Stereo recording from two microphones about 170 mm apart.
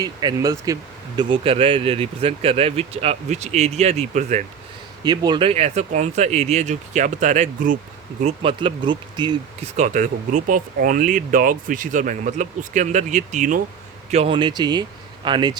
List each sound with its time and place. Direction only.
0.0 s speech: 25° right (ahead or behind); by 4.4 s 45° right (ahead or behind)
5.0 s speech: 25° right (ahead or behind); by 7.8 s 50° right (ahead or behind)
8.2 s speech: 35° right (ahead or behind)
9.7 s speech: 50° right (ahead or behind)
14.1 s speech: 35° right (ahead or behind)